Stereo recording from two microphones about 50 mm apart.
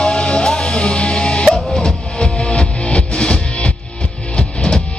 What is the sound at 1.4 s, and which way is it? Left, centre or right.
Music, centre.